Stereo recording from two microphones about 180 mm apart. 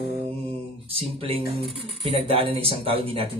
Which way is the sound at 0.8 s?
30° right (ahead or behind).